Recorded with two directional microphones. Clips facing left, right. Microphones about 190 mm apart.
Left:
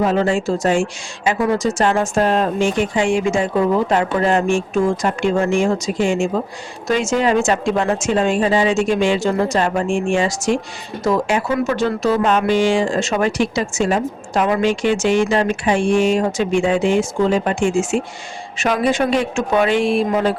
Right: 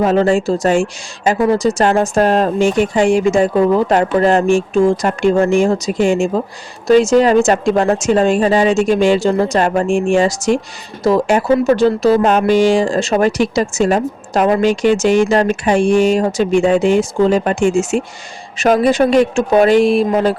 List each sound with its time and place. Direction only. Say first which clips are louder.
0.0 s speech: right 4 dB; 40° right (ahead or behind)